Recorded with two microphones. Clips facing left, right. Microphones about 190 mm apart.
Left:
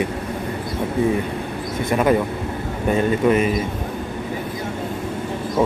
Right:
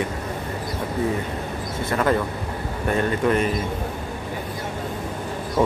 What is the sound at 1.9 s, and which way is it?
Speech, 15° left (ahead or behind).